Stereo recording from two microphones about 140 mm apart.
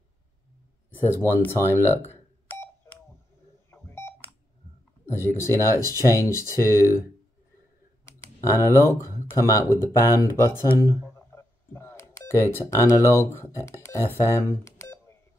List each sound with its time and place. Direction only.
1.1 s speech: 15° left (ahead or behind)
2.4 s telephone dialing: 15° left (ahead or behind)
3.7 s beep: 15° left (ahead or behind)
5.0 s speech: 20° left (ahead or behind)
8.0 s computer keyboard: 20° left (ahead or behind)
9.0 s speech: 20° left (ahead or behind)
14.2 s telephone dialing: 20° left (ahead or behind)